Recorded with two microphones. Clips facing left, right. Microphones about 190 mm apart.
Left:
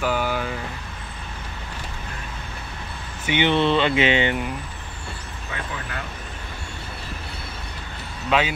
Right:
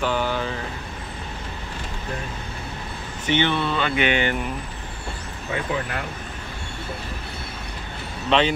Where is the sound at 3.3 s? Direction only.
15° left (ahead or behind).